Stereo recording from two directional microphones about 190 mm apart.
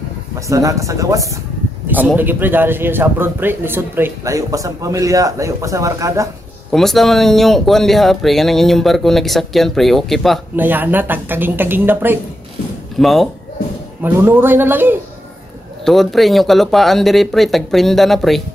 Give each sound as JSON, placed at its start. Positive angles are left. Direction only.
{"t": 0.5, "sound": "speech", "side_deg": -15}
{"t": 6.7, "sound": "speech", "side_deg": 0}
{"t": 10.5, "sound": "speech", "side_deg": -10}
{"t": 13.0, "sound": "speech", "side_deg": 0}
{"t": 14.0, "sound": "speech", "side_deg": -10}
{"t": 15.8, "sound": "speech", "side_deg": 0}